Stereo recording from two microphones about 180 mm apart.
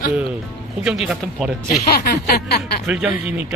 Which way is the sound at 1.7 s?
60° left (ahead or behind).